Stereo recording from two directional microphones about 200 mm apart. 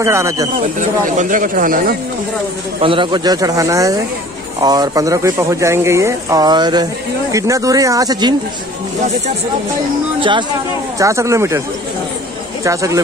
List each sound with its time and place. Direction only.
0.0 s speech: 15° right (ahead or behind)
0.7 s speech: 40° right (ahead or behind)
2.8 s speech: 25° right (ahead or behind)
11.0 s speech: 15° right (ahead or behind)
12.6 s speech: 15° right (ahead or behind)